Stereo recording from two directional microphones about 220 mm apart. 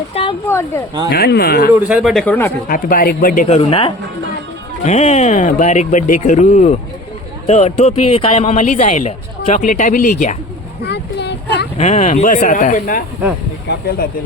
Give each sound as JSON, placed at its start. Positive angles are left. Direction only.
{"t": 0.1, "sound": "a sound", "side_deg": 25}
{"t": 1.1, "sound": "speech", "side_deg": 45}
{"t": 1.7, "sound": "a man's voice", "side_deg": -5}
{"t": 2.6, "sound": "a man's voice", "side_deg": 40}
{"t": 10.8, "sound": "a sound", "side_deg": 50}
{"t": 11.8, "sound": "a man's voice", "side_deg": 30}